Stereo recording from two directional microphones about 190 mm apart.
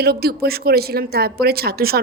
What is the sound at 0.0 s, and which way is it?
Speech, 55° right (ahead or behind).